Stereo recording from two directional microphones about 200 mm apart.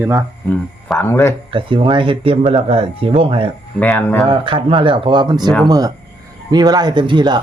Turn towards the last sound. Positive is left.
turn(degrees=-20)  # may be behind; listen again after turning